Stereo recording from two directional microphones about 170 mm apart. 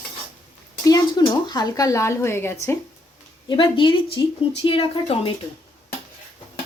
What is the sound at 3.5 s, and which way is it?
A woman's voice, 30° left (ahead or behind).